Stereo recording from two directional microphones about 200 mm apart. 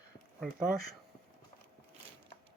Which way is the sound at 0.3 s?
Centre (ahead or behind).